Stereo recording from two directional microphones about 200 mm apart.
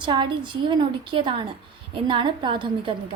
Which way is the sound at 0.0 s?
25° right (ahead or behind).